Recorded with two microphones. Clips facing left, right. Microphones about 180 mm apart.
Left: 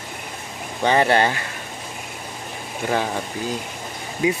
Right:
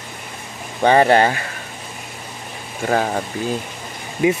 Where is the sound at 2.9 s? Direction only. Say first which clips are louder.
Right 4 dB; 45° right (ahead or behind).